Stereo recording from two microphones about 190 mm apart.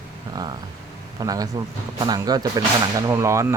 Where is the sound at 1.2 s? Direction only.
20° right (ahead or behind).